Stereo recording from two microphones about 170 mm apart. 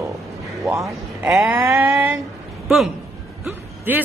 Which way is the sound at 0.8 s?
5° right (ahead or behind).